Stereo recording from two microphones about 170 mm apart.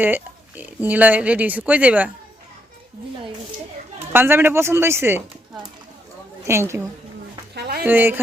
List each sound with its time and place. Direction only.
0.0 s speech: 10° right (ahead or behind)
4.1 s speech: 10° right (ahead or behind)
6.4 s a woman's voice: 15° right (ahead or behind)
7.5 s a sound: 70° right (ahead or behind)
7.9 s speech: 10° right (ahead or behind)